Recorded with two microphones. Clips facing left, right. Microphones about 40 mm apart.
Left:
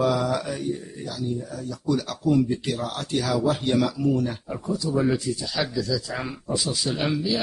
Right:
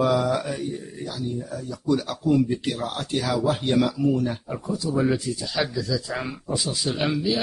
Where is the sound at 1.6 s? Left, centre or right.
Right.